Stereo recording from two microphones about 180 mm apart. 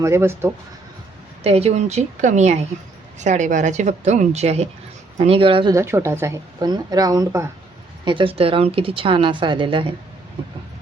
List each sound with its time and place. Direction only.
0.0 s speech: 15° right (ahead or behind)
1.5 s a woman's voice: 35° right (ahead or behind)
5.7 s speech: 15° right (ahead or behind)
8.0 s a woman's voice: 30° right (ahead or behind)